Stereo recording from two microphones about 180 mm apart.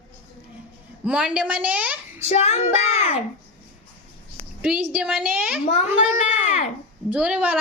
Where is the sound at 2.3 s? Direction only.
35° left (ahead or behind).